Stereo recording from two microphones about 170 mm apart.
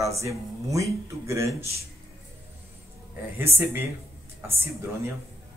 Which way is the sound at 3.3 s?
15° right (ahead or behind).